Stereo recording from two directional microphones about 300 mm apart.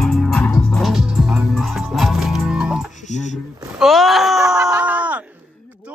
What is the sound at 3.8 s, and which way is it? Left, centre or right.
Groan, centre.